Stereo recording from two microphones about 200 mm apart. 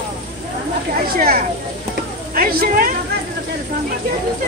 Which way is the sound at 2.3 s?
45° right (ahead or behind).